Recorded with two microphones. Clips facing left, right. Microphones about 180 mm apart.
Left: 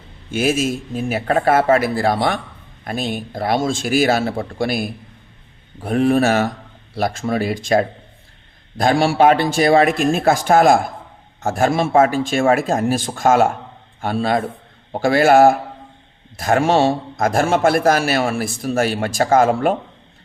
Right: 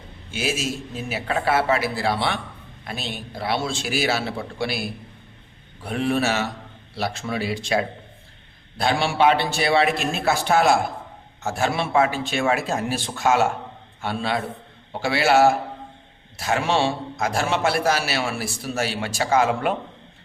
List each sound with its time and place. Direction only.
0.3 s a man's voice: 50° left (ahead or behind)